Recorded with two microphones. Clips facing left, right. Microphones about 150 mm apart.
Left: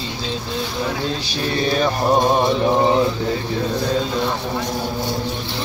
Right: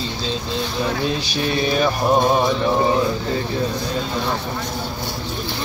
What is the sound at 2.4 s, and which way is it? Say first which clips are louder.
Mantra: left 2 dB; 20° left (ahead or behind).